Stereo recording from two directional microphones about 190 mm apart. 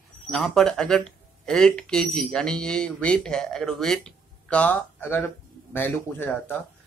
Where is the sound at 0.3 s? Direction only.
5° left (ahead or behind).